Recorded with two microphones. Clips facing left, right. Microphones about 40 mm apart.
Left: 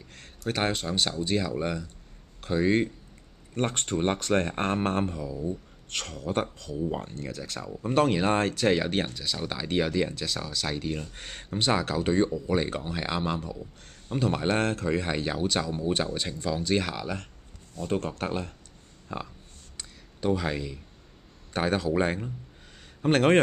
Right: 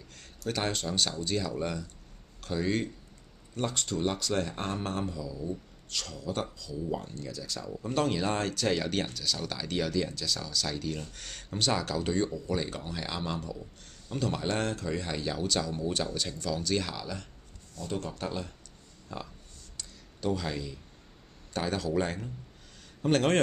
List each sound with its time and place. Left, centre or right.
0.5 s speech: left
3.5 s speech: left
5.1 s speech: left
19.8 s a sound: left
21.5 s speech: left